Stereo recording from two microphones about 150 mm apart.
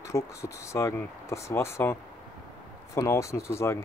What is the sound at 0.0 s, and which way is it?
Speech, 20° left (ahead or behind).